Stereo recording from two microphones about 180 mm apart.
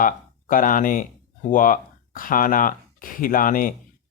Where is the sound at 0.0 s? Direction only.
50° left (ahead or behind).